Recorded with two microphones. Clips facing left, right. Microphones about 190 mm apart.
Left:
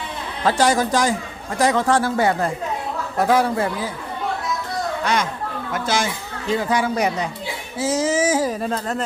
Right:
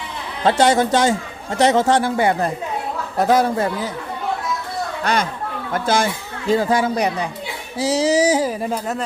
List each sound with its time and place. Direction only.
0.4 s speech: 25° right (ahead or behind)
5.7 s speech: 55° right (ahead or behind)
6.5 s music: 30° right (ahead or behind)
8.4 s speech: 10° right (ahead or behind)